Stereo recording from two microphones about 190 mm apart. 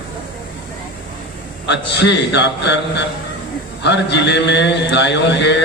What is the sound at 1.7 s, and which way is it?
Mantra, 65° left (ahead or behind).